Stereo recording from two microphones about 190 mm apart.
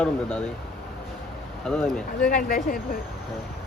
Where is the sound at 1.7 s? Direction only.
Centre (ahead or behind).